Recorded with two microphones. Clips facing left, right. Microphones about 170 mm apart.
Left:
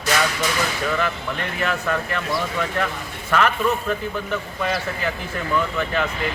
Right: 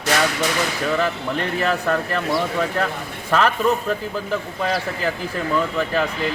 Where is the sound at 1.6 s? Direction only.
35° right (ahead or behind).